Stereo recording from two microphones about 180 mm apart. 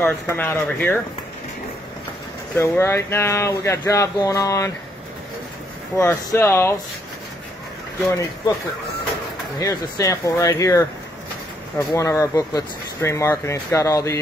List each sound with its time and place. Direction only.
0.0 s speech: 10° left (ahead or behind)
2.5 s speech: 15° left (ahead or behind)
5.9 s speech: 15° left (ahead or behind)
9.6 s speech: 20° left (ahead or behind)
11.9 s speech: 15° left (ahead or behind)